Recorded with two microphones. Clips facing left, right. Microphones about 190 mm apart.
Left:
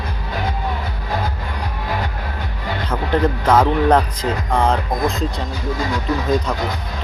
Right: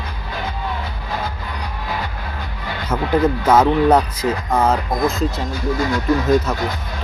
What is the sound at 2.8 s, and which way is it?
Speech, 10° right (ahead or behind).